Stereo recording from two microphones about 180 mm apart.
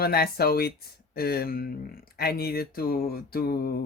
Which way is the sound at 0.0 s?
60° left (ahead or behind).